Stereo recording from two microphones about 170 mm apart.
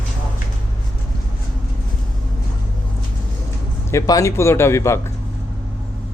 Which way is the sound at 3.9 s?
20° left (ahead or behind).